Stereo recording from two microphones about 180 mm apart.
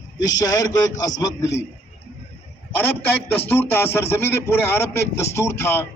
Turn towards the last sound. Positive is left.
turn(degrees=15)  # may be behind; listen again after turning